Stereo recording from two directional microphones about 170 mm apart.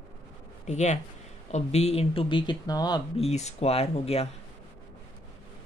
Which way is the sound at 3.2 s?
40° left (ahead or behind).